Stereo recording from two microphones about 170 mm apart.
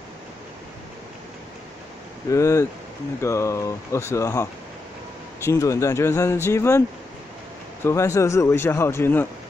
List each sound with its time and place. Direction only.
2.3 s speech: 15° left (ahead or behind)
7.8 s speech: 15° left (ahead or behind)